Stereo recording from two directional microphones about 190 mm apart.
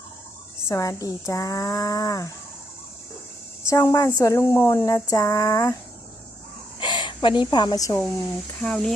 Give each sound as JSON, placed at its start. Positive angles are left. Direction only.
{"t": 0.7, "sound": "speech", "side_deg": 20}
{"t": 3.7, "sound": "speech", "side_deg": 15}
{"t": 6.7, "sound": "speech", "side_deg": 25}
{"t": 8.6, "sound": "speech", "side_deg": 5}